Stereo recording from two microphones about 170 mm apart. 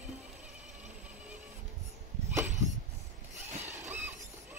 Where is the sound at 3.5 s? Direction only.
40° right (ahead or behind).